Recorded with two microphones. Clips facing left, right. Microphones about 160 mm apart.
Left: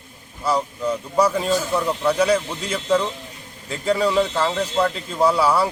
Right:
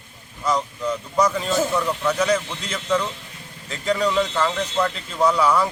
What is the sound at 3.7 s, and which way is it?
A man's voice, 10° left (ahead or behind).